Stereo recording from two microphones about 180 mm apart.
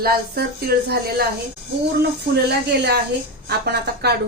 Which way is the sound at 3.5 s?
65° right (ahead or behind).